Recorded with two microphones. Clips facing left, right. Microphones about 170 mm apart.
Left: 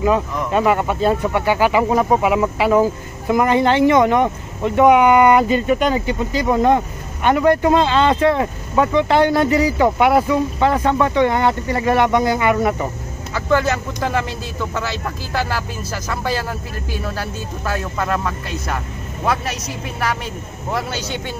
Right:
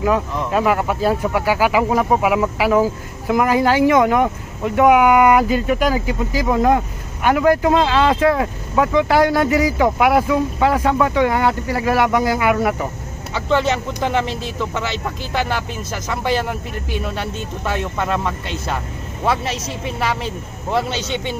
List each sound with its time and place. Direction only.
0.5 s speech: centre (ahead or behind)
13.3 s speech: 25° right (ahead or behind)